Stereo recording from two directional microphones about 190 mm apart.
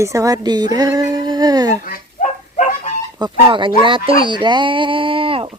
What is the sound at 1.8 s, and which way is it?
Goose, 45° left (ahead or behind).